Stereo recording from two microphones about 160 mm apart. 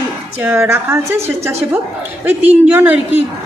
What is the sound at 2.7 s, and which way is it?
Speech, 10° right (ahead or behind).